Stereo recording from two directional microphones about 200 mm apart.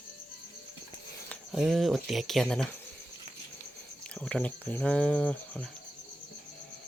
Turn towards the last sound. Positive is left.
turn(degrees=5)  # may be behind; listen again after turning